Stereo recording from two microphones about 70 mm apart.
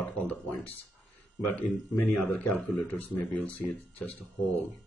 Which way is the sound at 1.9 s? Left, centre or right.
Left.